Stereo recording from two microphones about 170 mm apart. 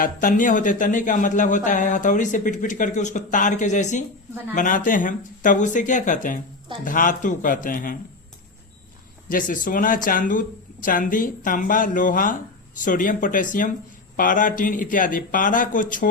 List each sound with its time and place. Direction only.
0.0 s speech: 50° left (ahead or behind)
9.3 s speech: 50° left (ahead or behind)